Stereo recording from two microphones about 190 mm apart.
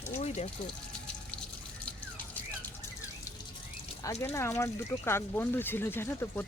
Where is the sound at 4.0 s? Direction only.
15° left (ahead or behind).